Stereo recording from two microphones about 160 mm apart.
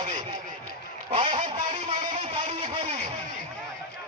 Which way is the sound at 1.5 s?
50° right (ahead or behind).